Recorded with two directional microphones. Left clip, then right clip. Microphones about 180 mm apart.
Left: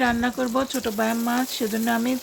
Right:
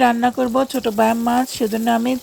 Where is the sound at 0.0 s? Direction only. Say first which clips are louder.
Right 7 dB; 30° right (ahead or behind).